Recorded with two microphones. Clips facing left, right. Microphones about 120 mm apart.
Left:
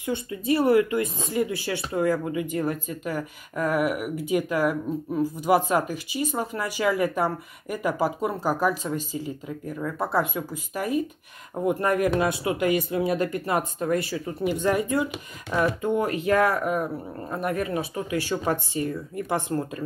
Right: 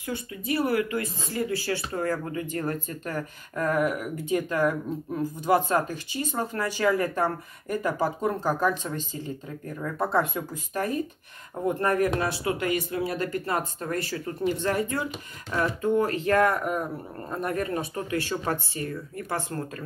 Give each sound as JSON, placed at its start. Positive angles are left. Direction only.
{"t": 0.0, "sound": "speech", "side_deg": 25}